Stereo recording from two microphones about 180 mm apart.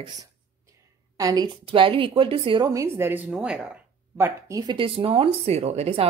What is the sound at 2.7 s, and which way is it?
Speech, 15° right (ahead or behind).